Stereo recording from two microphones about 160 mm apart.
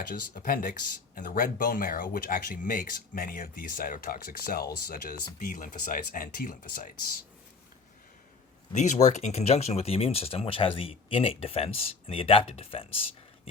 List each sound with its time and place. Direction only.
0.1 s speech: 65° left (ahead or behind)
5.5 s speech: 55° left (ahead or behind)
8.7 s speech: 45° left (ahead or behind)